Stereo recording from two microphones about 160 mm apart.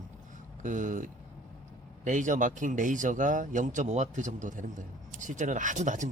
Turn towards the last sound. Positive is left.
turn(degrees=-50)  # may be behind; listen again after turning